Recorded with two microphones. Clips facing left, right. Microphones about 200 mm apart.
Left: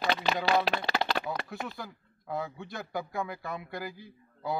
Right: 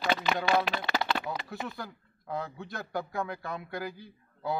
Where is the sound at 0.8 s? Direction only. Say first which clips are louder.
Even; 35° left (ahead or behind).